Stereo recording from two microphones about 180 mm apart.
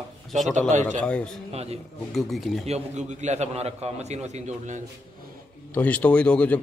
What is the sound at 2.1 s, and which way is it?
Speech, centre (ahead or behind).